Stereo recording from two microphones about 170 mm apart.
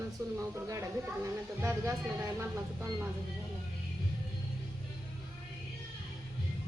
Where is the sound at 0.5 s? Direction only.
15° right (ahead or behind).